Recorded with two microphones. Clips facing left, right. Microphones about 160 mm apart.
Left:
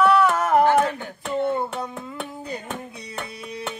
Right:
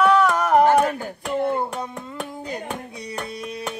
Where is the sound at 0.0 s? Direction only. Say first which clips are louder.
Right 1 dB; centre (ahead or behind).